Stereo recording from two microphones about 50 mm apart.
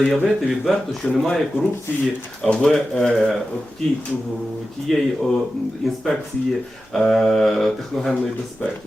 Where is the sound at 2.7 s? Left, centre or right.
Centre.